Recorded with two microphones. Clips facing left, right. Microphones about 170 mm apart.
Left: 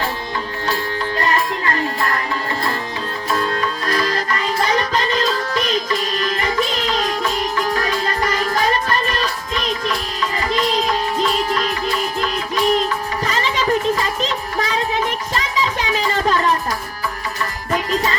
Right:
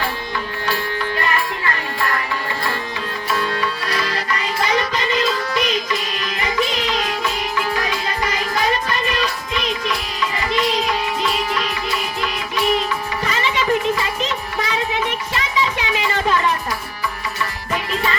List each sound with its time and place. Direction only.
1.2 s music: 35° left (ahead or behind)
3.3 s music: 40° left (ahead or behind)
17.7 s music: 35° left (ahead or behind)